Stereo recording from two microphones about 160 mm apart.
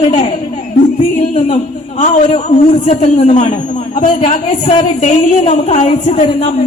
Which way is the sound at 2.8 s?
45° left (ahead or behind).